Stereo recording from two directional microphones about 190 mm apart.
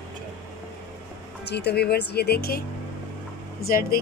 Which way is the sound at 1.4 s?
60° left (ahead or behind).